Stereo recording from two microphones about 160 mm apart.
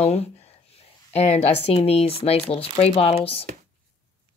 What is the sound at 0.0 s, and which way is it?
Speech, 40° left (ahead or behind).